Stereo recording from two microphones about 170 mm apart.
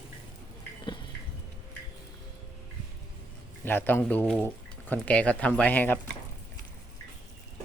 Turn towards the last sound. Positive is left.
turn(degrees=10)  # may be behind; listen again after turning